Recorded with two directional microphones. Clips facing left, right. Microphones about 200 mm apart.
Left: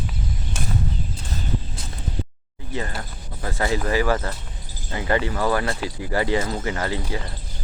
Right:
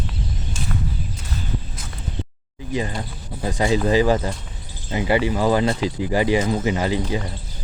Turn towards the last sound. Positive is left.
turn(degrees=-20)  # may be behind; listen again after turning